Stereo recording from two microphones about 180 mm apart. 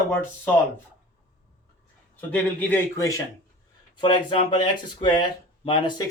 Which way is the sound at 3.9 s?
25° left (ahead or behind).